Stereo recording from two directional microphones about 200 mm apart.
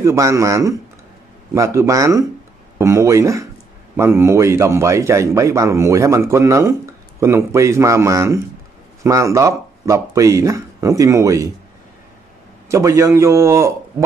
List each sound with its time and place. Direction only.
0.0 s a man's voice: 15° right (ahead or behind)
12.6 s a man's voice: 15° right (ahead or behind)